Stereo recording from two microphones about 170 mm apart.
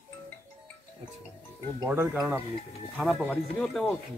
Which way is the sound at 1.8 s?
15° right (ahead or behind).